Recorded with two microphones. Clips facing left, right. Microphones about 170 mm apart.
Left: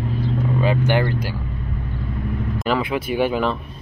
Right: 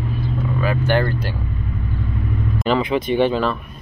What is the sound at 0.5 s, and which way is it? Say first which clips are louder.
Vehicle: right 1 dB; 20° left (ahead or behind).